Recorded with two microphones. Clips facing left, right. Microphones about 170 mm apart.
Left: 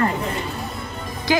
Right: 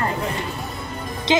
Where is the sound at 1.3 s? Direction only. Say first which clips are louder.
Right 1 dB; 20° right (ahead or behind).